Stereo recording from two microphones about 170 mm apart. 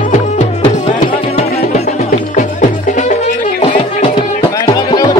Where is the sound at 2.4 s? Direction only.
45° left (ahead or behind).